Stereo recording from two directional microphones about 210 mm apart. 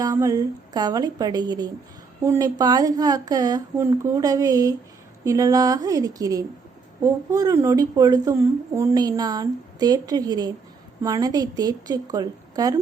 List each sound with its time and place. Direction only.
0.0 s a woman's voice: 15° right (ahead or behind)